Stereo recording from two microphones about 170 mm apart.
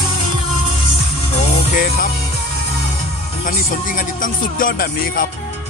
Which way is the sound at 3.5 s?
55° left (ahead or behind).